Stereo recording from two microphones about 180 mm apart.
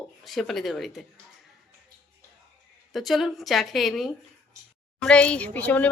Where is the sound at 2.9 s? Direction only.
Centre (ahead or behind).